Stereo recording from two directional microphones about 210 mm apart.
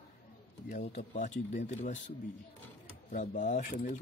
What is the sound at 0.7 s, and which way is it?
Speech, 45° left (ahead or behind).